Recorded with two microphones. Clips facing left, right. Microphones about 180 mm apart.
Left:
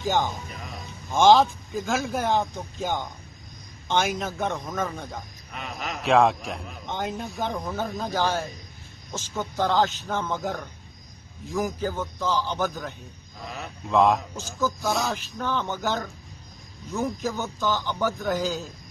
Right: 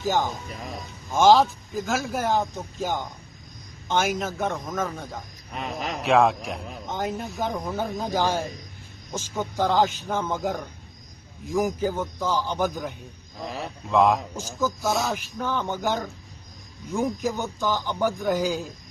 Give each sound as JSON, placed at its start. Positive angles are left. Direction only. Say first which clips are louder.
{"t": 0.0, "sound": "speech", "louder": "even", "side_deg": -5}
{"t": 5.5, "sound": "speech", "louder": "right 4 dB", "side_deg": -35}
{"t": 6.0, "sound": "a man's voice", "louder": "even", "side_deg": 0}
{"t": 13.8, "sound": "speech", "louder": "even", "side_deg": 0}
{"t": 15.1, "sound": "a man's voice", "louder": "even", "side_deg": -10}